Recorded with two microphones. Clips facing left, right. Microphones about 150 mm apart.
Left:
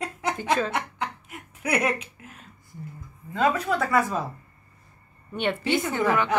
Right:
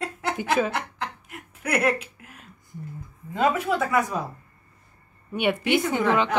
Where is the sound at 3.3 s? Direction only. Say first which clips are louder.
Right 1 dB; 20° right (ahead or behind).